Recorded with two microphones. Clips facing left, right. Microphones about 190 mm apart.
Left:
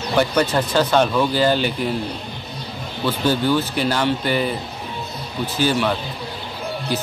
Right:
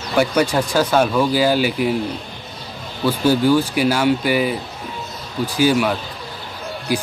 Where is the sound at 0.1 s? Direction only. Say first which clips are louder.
Right 1 dB; 10° right (ahead or behind).